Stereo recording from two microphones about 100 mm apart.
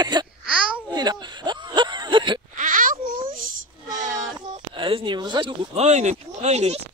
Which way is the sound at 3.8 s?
50° right (ahead or behind).